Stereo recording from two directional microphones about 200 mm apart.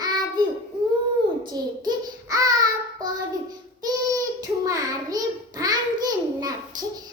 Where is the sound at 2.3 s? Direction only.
20° right (ahead or behind).